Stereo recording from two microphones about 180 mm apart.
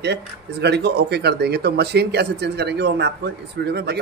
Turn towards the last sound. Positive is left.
turn(degrees=-65)  # may be behind; listen again after turning